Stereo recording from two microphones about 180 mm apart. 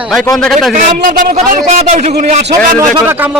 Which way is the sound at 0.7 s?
50° right (ahead or behind).